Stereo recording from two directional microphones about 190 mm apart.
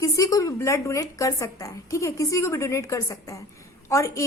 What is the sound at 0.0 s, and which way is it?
A woman's voice, 15° left (ahead or behind).